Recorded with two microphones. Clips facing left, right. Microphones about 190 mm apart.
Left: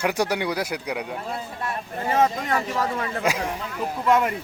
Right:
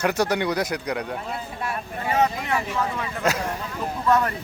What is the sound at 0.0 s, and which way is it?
Speech, 10° left (ahead or behind).